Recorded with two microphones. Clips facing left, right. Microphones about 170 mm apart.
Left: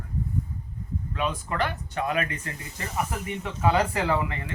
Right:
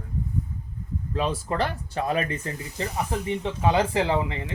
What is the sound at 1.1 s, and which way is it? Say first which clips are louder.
Speech: right 3 dB; 35° right (ahead or behind).